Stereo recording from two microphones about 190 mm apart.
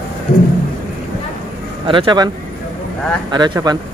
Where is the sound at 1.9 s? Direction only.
25° right (ahead or behind).